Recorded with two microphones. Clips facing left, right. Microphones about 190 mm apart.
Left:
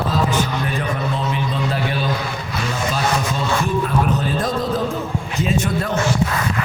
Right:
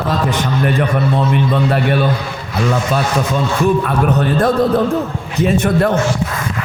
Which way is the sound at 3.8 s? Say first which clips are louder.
Right 4 dB; 65° right (ahead or behind).